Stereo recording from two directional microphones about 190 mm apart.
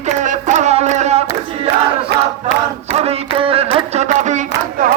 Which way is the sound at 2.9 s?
30° right (ahead or behind).